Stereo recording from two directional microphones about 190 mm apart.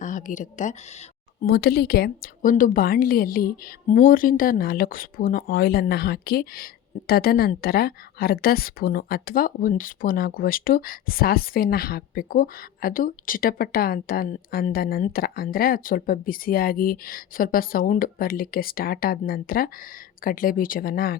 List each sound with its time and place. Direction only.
0.0 s speech: 40° left (ahead or behind)
1.5 s a woman's voice: 55° left (ahead or behind)